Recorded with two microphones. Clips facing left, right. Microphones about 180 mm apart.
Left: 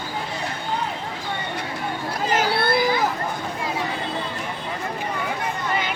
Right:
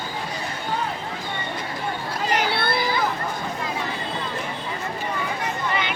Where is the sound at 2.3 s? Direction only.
45° left (ahead or behind).